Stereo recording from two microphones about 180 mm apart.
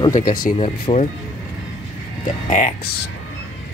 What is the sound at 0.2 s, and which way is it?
Speech, 50° left (ahead or behind).